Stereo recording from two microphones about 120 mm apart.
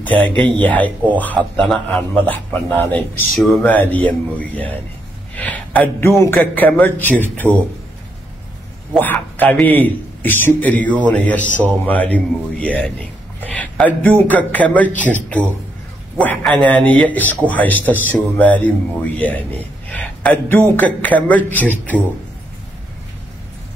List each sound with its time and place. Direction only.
0.0 s a man's voice: 15° left (ahead or behind)
3.3 s speech: centre (ahead or behind)
3.6 s a man's voice: 15° left (ahead or behind)
8.9 s a man's voice: 15° left (ahead or behind)